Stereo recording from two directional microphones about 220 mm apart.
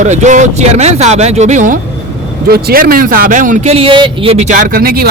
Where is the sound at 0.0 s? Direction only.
35° right (ahead or behind).